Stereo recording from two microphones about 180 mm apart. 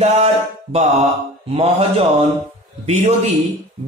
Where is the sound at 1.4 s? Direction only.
35° right (ahead or behind).